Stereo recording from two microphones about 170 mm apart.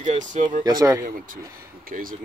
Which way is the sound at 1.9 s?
55° right (ahead or behind).